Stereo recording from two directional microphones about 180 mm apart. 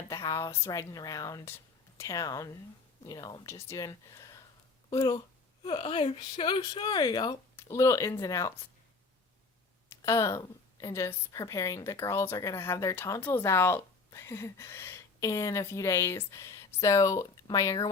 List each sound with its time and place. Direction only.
0.1 s speech: 20° left (ahead or behind)
9.9 s a woman's voice: 15° left (ahead or behind)